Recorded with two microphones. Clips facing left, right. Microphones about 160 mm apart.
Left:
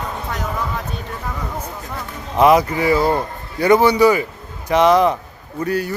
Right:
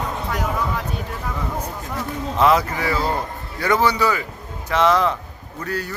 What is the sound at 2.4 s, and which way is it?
Speech, 15° left (ahead or behind).